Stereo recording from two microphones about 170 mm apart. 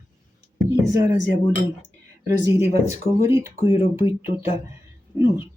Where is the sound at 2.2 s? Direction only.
20° right (ahead or behind).